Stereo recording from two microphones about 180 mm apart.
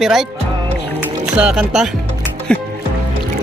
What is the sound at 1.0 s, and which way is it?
Music, 5° right (ahead or behind).